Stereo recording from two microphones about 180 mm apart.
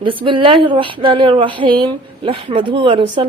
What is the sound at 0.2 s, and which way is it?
Speech, 30° right (ahead or behind).